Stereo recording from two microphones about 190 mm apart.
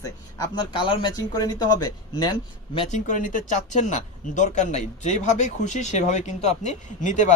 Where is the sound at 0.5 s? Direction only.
25° left (ahead or behind).